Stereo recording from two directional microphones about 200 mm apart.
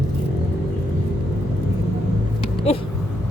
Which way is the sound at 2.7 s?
30° left (ahead or behind).